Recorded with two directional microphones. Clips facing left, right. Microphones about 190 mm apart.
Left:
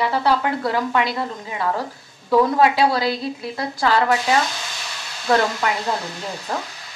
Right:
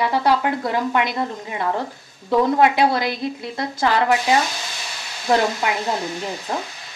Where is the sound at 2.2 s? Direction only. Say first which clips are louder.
Even; 20° right (ahead or behind).